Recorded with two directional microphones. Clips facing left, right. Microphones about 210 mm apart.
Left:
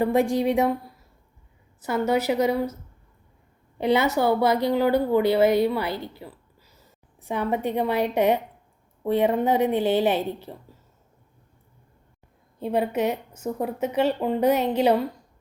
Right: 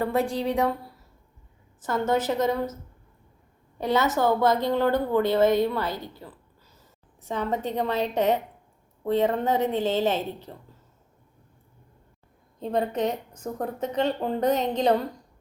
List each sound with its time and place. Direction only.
0.0 s speech: 15° left (ahead or behind)
3.8 s speech: 15° left (ahead or behind)
6.1 s a sound: 10° left (ahead or behind)
7.3 s speech: 10° left (ahead or behind)
12.5 s speech: 10° left (ahead or behind)